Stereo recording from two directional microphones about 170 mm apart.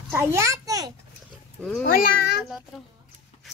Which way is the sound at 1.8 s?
60° left (ahead or behind).